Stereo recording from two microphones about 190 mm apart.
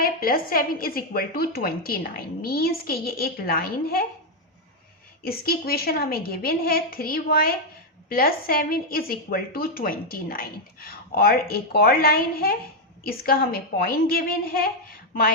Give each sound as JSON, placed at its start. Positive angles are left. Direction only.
{"t": 0.0, "sound": "a woman's voice", "side_deg": 50}
{"t": 5.2, "sound": "a woman's voice", "side_deg": 55}